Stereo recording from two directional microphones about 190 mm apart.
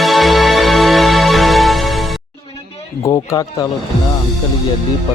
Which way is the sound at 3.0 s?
15° left (ahead or behind).